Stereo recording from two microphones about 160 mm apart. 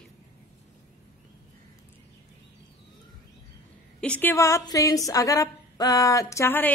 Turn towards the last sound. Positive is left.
turn(degrees=15)  # may be behind; listen again after turning